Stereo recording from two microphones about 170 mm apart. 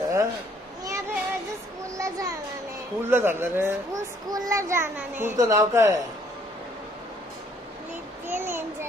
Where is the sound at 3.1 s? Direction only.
15° right (ahead or behind).